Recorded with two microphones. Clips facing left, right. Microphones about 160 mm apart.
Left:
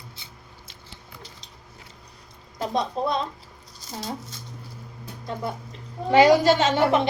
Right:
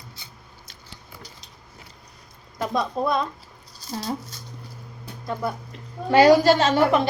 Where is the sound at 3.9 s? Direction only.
25° left (ahead or behind).